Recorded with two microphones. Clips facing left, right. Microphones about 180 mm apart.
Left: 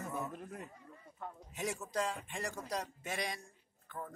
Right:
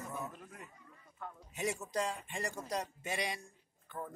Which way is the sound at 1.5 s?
Centre (ahead or behind).